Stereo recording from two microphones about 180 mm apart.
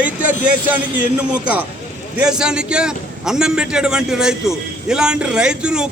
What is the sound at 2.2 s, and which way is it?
A man's voice, 5° right (ahead or behind).